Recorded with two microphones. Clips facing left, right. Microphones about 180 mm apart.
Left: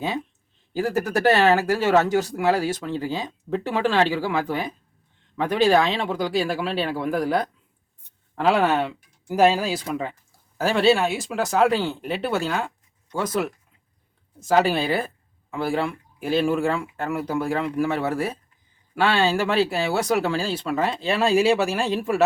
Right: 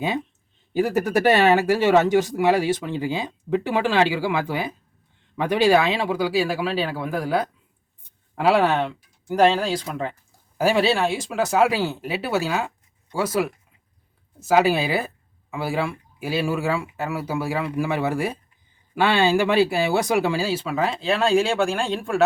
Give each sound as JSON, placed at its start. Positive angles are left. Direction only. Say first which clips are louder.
{"t": 0.8, "sound": "speech", "louder": "right 2 dB", "side_deg": -15}